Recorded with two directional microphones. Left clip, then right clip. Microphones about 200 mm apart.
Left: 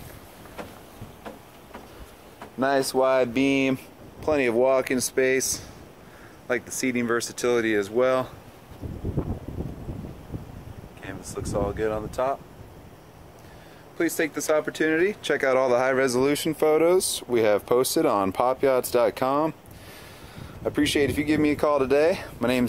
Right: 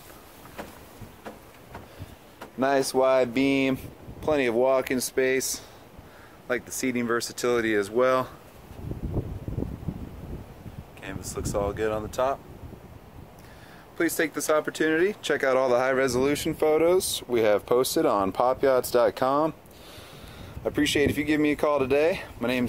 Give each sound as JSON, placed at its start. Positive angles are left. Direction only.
{"t": 2.6, "sound": "speech", "side_deg": -10}
{"t": 11.0, "sound": "speech", "side_deg": -5}
{"t": 13.9, "sound": "speech", "side_deg": -5}